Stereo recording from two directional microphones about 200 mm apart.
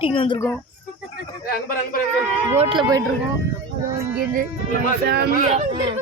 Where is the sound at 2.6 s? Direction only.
25° right (ahead or behind).